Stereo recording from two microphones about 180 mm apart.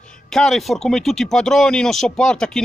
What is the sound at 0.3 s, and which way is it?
A man's voice, centre (ahead or behind).